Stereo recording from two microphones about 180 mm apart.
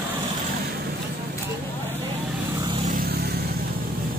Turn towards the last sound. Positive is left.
turn(degrees=-60)  # may be behind; listen again after turning